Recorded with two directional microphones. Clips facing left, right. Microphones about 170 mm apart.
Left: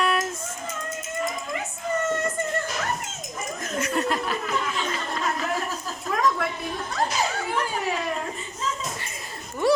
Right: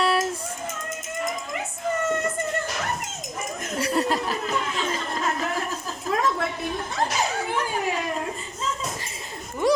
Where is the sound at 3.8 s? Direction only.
35° right (ahead or behind).